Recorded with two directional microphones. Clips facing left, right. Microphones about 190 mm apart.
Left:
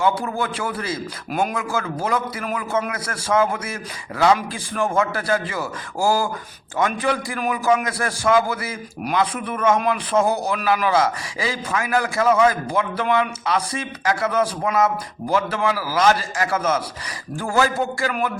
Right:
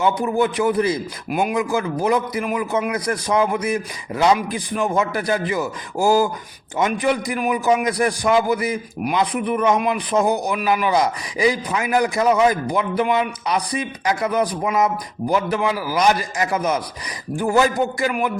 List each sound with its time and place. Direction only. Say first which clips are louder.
0.0 s a man's voice: right 3 dB; 20° right (ahead or behind)